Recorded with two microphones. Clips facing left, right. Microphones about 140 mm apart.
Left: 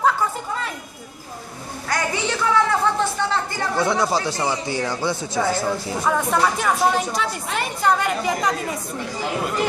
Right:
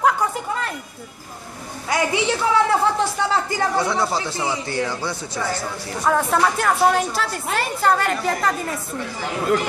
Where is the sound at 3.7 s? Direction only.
20° left (ahead or behind).